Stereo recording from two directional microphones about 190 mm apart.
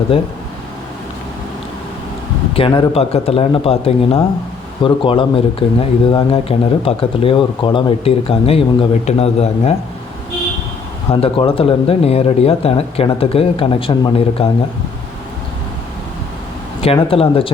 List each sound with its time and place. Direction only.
2.6 s speech: 30° left (ahead or behind)
11.1 s speech: 30° left (ahead or behind)
16.8 s speech: 30° left (ahead or behind)